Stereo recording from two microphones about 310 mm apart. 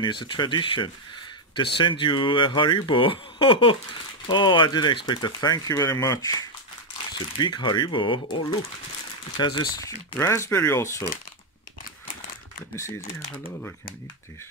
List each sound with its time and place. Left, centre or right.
0.0 s speech: centre
12.7 s speech: centre